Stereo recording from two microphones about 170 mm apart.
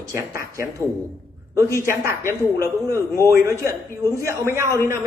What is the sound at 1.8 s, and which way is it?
A man's voice, 15° right (ahead or behind).